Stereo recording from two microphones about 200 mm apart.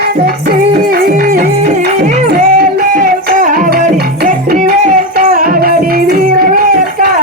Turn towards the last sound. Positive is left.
turn(degrees=-45)  # may be behind; listen again after turning